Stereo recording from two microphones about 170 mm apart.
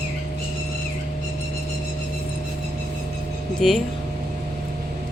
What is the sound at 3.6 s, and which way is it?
Speech, centre (ahead or behind).